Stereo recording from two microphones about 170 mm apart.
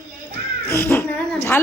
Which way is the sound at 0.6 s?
15° left (ahead or behind).